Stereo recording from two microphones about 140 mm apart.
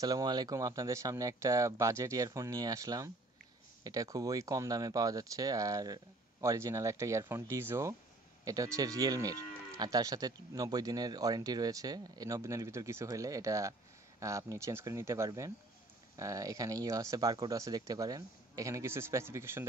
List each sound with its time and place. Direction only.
0.0 s livestock: 30° right (ahead or behind)